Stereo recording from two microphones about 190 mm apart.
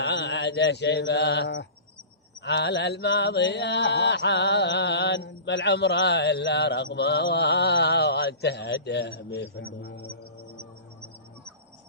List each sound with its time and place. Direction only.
0.0 s mantra: 65° left (ahead or behind)